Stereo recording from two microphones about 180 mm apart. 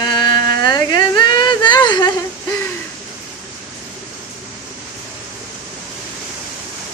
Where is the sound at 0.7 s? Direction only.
25° left (ahead or behind).